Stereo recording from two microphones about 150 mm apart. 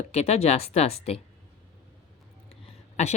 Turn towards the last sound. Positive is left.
turn(degrees=45)  # may be behind; listen again after turning